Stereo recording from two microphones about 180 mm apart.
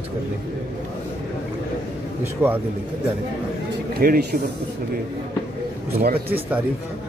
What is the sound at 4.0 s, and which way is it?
Speech, 60° right (ahead or behind).